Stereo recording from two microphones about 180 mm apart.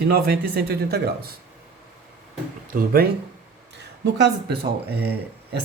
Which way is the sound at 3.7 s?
65° right (ahead or behind).